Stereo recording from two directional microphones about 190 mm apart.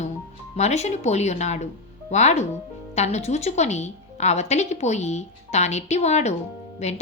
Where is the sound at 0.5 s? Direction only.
35° left (ahead or behind).